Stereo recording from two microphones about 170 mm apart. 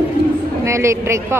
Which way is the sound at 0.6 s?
15° right (ahead or behind).